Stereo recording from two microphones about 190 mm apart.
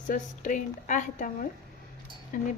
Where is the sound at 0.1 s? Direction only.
40° left (ahead or behind).